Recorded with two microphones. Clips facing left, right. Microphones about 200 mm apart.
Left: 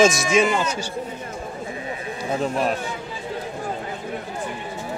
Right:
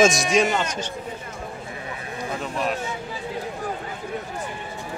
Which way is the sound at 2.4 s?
40° left (ahead or behind).